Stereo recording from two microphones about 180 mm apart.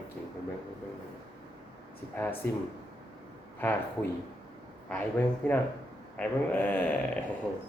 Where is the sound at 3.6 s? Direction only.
10° left (ahead or behind).